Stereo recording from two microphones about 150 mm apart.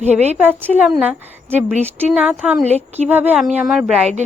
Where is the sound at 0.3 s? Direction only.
10° right (ahead or behind).